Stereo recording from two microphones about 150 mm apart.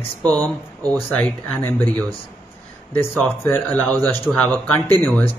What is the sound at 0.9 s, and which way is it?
Speech, 10° left (ahead or behind).